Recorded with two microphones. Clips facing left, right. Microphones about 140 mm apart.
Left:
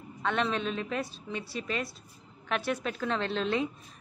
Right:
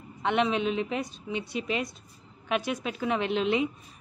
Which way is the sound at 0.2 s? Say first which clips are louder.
Right 4 dB; 15° right (ahead or behind).